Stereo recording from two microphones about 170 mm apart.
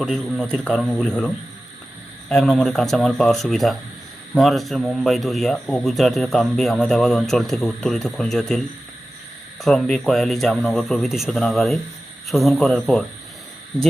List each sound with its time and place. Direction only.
0.0 s a man's voice: centre (ahead or behind)
2.3 s a man's voice: centre (ahead or behind)
9.6 s a man's voice: 5° left (ahead or behind)